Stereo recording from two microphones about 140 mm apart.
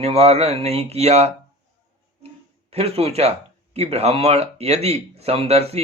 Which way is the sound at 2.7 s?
45° right (ahead or behind).